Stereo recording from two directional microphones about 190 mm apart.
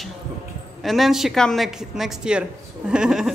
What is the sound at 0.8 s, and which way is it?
A woman's voice, centre (ahead or behind).